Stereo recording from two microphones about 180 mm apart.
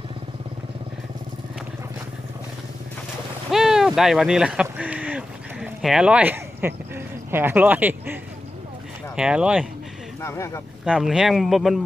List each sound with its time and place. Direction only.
3.4 s a sound: centre (ahead or behind)
7.2 s speech: 10° right (ahead or behind)
10.2 s speech: 15° left (ahead or behind)
10.9 s speech: 5° right (ahead or behind)